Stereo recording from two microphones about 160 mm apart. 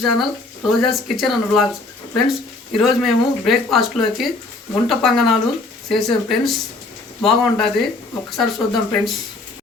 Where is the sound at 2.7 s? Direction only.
Centre (ahead or behind).